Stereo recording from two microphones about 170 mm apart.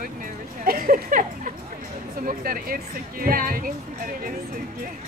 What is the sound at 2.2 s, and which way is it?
Speech, 55° right (ahead or behind).